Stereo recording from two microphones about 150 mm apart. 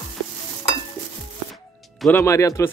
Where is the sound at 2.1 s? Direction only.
20° left (ahead or behind).